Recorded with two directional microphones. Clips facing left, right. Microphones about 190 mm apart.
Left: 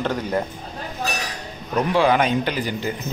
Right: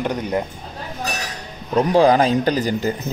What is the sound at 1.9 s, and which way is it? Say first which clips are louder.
Speech: right 4 dB; 35° right (ahead or behind).